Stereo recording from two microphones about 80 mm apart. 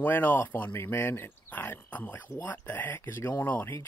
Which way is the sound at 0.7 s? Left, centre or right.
Left.